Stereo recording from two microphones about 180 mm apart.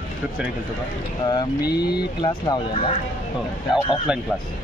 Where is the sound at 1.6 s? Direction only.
60° left (ahead or behind).